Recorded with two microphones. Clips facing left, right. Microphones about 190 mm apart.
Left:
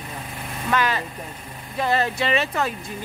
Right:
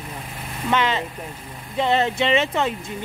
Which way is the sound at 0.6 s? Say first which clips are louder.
Right 2 dB; 20° right (ahead or behind).